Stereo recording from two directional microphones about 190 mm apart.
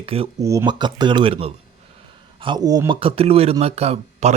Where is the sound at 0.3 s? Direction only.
15° right (ahead or behind).